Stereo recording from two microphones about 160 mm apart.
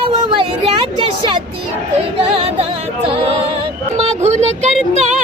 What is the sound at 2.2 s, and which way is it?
Music, 35° right (ahead or behind).